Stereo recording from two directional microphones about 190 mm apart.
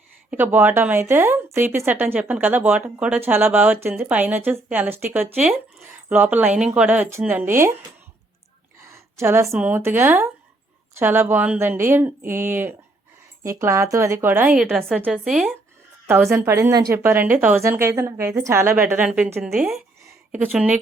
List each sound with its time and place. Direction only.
0.3 s speech: 10° right (ahead or behind)
8.8 s a sound: 15° right (ahead or behind)
9.5 s speech: 5° right (ahead or behind)
16.3 s speech: 15° right (ahead or behind)